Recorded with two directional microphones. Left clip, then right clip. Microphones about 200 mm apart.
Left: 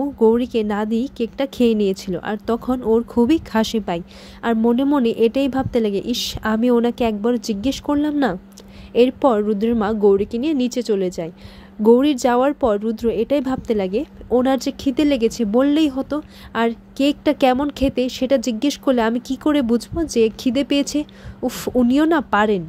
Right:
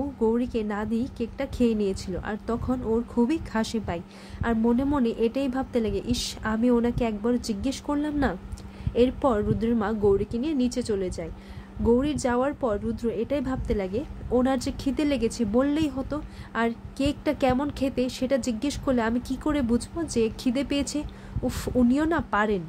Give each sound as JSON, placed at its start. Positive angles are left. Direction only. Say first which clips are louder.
{"t": 0.2, "sound": "speech", "louder": "left 10 dB", "side_deg": 35}